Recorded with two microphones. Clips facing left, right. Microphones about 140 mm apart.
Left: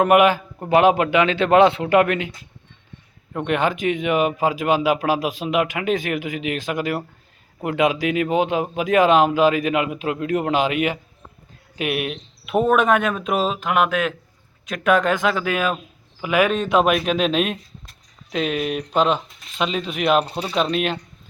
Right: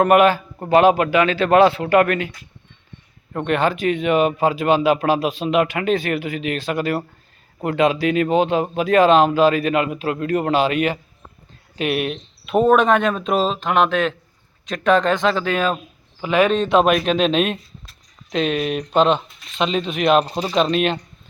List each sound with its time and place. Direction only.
0.0 s a man's voice: 15° left (ahead or behind)